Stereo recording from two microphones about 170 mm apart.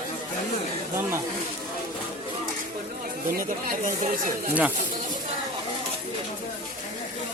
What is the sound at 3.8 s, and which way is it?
Speech, 50° right (ahead or behind).